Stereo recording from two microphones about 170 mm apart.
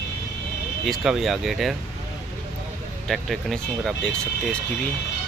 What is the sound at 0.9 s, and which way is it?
Speech, centre (ahead or behind).